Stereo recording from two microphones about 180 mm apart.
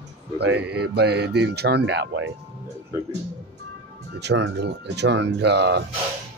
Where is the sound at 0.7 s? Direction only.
65° right (ahead or behind).